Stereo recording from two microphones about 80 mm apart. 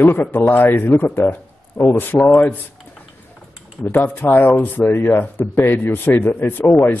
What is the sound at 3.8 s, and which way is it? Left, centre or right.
Speech, left.